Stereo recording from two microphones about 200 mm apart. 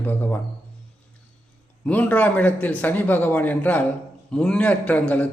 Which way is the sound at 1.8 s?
5° left (ahead or behind).